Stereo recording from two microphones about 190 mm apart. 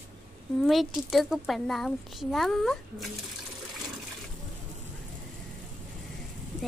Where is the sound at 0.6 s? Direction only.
Centre (ahead or behind).